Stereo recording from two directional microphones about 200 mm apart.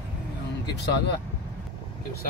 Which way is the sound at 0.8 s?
55° left (ahead or behind).